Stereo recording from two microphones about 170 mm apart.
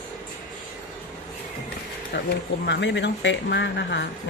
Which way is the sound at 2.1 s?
90° left.